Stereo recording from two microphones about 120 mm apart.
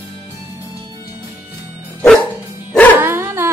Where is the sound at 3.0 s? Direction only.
20° right (ahead or behind).